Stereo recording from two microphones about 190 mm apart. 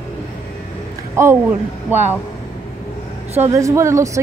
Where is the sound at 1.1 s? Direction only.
15° right (ahead or behind).